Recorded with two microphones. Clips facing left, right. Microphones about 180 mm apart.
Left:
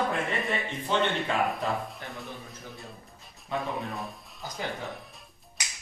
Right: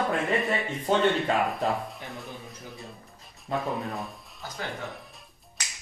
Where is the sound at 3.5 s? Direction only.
Centre (ahead or behind).